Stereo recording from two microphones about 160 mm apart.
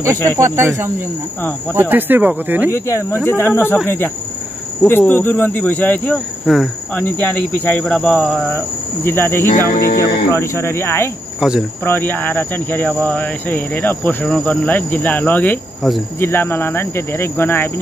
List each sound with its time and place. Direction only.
0.4 s speech: 15° right (ahead or behind)
2.7 s speech: 15° left (ahead or behind)
6.4 s speech: 5° right (ahead or behind)
7.0 s speech: 10° left (ahead or behind)
11.3 s cricket: 5° right (ahead or behind)
11.8 s speech: 10° left (ahead or behind)